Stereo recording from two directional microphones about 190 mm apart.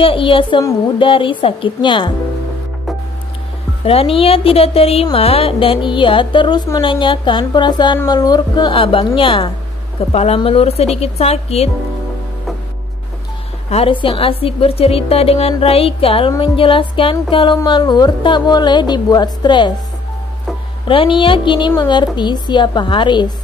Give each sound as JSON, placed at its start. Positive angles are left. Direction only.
{"t": 0.0, "sound": "a woman's voice", "side_deg": 30}
{"t": 3.8, "sound": "a woman's voice", "side_deg": 30}
{"t": 13.7, "sound": "a woman's voice", "side_deg": 30}
{"t": 20.8, "sound": "a woman's voice", "side_deg": 25}